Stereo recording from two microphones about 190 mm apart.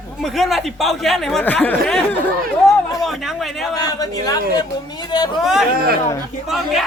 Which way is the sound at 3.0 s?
Centre (ahead or behind).